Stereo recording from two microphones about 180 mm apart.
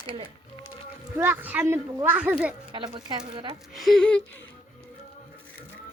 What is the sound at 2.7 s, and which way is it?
Speech, 25° right (ahead or behind).